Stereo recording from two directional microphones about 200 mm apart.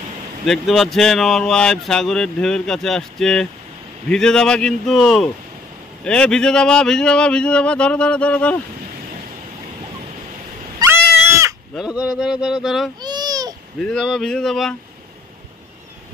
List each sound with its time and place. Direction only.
0.5 s speech: centre (ahead or behind)
11.7 s speech: 5° right (ahead or behind)
13.0 s babbling: 20° right (ahead or behind)
13.7 s speech: 5° left (ahead or behind)